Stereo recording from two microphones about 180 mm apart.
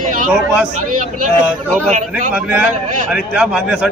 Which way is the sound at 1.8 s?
40° right (ahead or behind).